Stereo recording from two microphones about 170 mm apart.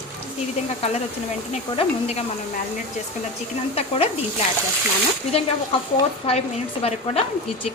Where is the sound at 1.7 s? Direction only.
40° left (ahead or behind).